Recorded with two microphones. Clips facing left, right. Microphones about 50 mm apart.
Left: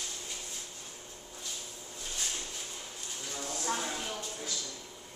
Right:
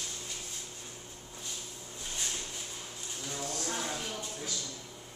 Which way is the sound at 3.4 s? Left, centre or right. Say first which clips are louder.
Left 3 dB; centre.